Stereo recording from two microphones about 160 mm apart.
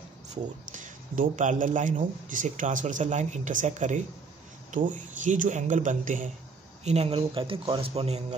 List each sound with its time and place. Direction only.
0.3 s speech: 55° right (ahead or behind)
6.8 s a man's voice: 40° right (ahead or behind)